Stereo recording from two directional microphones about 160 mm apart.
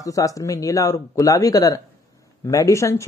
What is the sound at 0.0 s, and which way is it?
Speech, 20° left (ahead or behind).